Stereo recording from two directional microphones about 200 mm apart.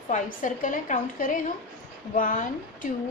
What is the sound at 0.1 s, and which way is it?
A woman's voice, 40° left (ahead or behind).